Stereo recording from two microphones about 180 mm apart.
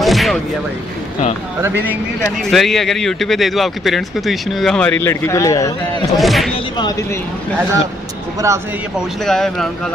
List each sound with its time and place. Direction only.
0.0 s a sound: centre (ahead or behind)
1.6 s speech: 10° right (ahead or behind)
2.2 s speech: centre (ahead or behind); by 6.0 s 20° left (ahead or behind)
6.1 s speech: centre (ahead or behind)
8.4 s speech: 15° right (ahead or behind)
8.9 s speech: centre (ahead or behind)